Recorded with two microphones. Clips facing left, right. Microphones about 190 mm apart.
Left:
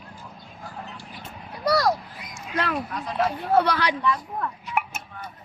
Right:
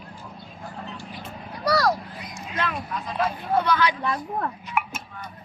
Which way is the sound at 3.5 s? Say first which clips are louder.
Left 2 dB; 75° left (ahead or behind).